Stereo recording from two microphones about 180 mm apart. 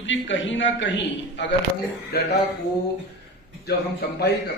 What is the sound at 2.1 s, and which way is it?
Speech, 60° left (ahead or behind).